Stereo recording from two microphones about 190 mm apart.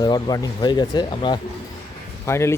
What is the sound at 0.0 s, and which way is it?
Speech, 20° left (ahead or behind).